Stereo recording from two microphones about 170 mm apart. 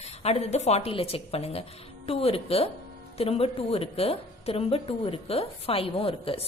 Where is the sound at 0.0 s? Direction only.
40° left (ahead or behind).